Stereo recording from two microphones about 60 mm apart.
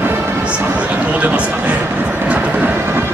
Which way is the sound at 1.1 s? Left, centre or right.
Right.